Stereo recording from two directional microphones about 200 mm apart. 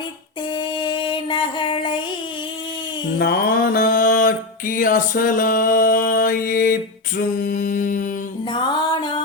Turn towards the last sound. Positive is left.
turn(degrees=40)  # may be behind; listen again after turning